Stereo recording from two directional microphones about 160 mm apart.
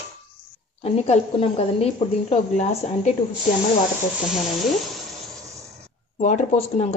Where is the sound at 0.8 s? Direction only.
40° left (ahead or behind).